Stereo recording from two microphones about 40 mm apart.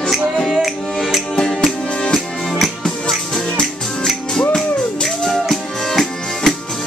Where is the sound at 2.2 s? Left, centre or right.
Centre.